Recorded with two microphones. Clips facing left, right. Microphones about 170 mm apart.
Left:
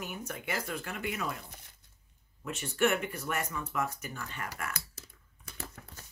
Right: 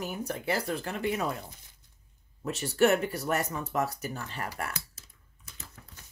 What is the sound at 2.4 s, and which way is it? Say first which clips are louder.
Speech: right 5 dB; 35° right (ahead or behind).